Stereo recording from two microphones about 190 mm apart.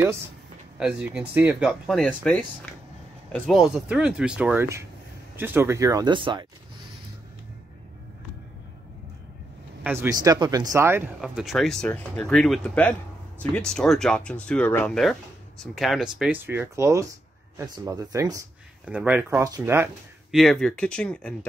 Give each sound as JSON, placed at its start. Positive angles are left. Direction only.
{"t": 0.7, "sound": "speech", "side_deg": -5}
{"t": 9.8, "sound": "speech", "side_deg": -15}
{"t": 20.2, "sound": "speech", "side_deg": 0}